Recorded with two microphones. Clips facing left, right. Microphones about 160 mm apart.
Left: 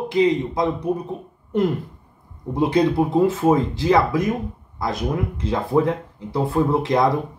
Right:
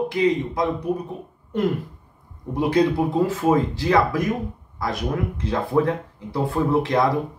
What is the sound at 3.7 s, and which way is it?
Speech, 20° left (ahead or behind).